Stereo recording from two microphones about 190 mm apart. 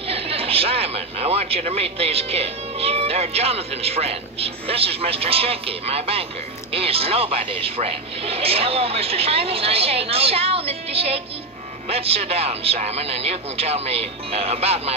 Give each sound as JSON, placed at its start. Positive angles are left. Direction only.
{"t": 0.1, "sound": "speech", "side_deg": -30}